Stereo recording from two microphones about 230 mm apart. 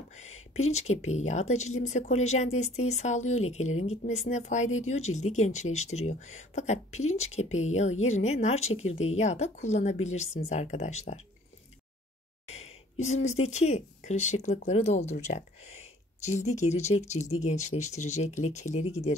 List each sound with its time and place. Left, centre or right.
1.0 s a woman's voice: left
12.4 s a sound: left
13.0 s a woman's voice: left